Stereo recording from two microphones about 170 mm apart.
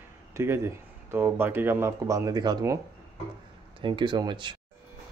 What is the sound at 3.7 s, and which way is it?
Speech, 30° right (ahead or behind).